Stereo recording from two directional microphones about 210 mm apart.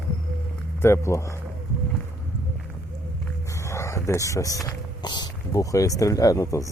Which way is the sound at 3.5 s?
15° left (ahead or behind).